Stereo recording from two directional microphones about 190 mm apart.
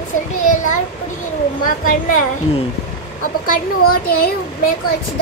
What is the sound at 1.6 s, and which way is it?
Speech, 45° left (ahead or behind).